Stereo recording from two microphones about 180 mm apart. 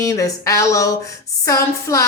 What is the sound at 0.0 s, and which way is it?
A woman's voice, 20° left (ahead or behind).